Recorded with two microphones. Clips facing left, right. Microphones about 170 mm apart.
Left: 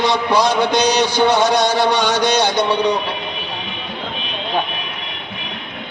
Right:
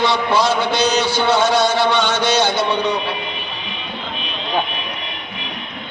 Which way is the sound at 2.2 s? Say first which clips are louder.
Left 1 dB; 15° left (ahead or behind).